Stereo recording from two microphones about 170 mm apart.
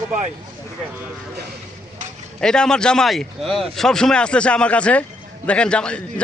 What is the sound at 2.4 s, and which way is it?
A man's voice, 5° left (ahead or behind).